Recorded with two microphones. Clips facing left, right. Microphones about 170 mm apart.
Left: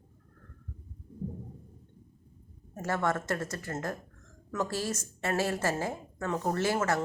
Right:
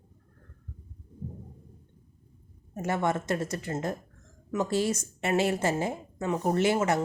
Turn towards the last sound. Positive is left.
turn(degrees=-20)  # may be behind; listen again after turning